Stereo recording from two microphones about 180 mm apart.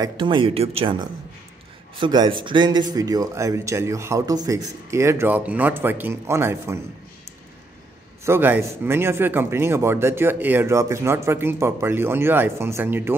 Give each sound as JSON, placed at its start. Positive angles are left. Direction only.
{"t": 0.0, "sound": "a man's voice", "side_deg": -25}
{"t": 8.3, "sound": "a man's voice", "side_deg": -10}